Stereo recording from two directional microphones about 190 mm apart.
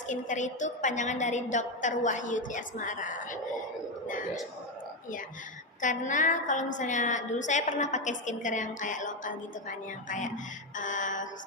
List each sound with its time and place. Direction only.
0.1 s a woman's voice: 40° left (ahead or behind)
5.8 s a woman's voice: 40° left (ahead or behind)